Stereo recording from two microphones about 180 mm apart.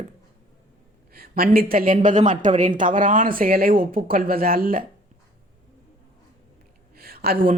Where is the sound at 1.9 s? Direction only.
40° right (ahead or behind).